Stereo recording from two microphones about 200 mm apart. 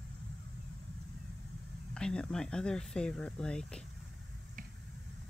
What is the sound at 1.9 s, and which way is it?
Speech, 5° left (ahead or behind).